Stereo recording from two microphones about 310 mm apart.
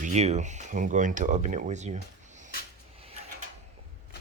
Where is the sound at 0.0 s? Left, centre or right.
Right.